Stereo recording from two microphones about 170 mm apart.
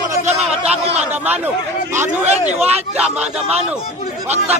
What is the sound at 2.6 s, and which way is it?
Speech, 40° right (ahead or behind).